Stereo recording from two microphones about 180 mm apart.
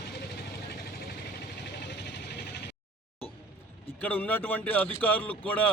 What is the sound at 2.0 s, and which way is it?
Vehicle, 70° left (ahead or behind).